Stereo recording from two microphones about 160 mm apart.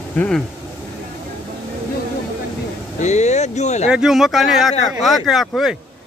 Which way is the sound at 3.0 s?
45° left (ahead or behind).